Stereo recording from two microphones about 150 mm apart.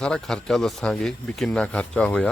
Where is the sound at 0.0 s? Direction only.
5° left (ahead or behind).